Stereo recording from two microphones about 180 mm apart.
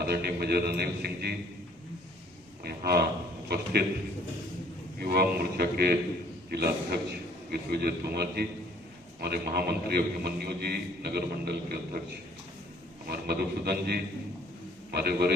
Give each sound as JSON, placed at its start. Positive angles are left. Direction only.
{"t": 0.0, "sound": "a man's voice", "side_deg": -60}
{"t": 2.6, "sound": "a man's voice", "side_deg": -60}
{"t": 4.9, "sound": "a man's voice", "side_deg": -60}
{"t": 13.1, "sound": "a man's voice", "side_deg": -60}